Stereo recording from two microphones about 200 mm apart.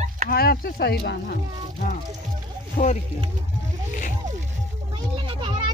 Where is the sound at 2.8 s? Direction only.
30° left (ahead or behind).